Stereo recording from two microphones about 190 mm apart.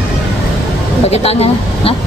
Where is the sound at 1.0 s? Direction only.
30° left (ahead or behind).